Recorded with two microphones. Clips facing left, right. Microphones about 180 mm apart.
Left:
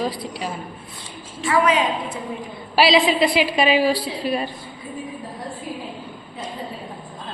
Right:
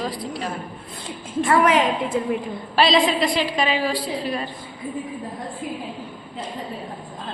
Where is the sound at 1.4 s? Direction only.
55° right (ahead or behind).